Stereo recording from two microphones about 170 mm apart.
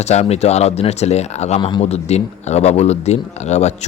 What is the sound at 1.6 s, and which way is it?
Speech, 30° left (ahead or behind).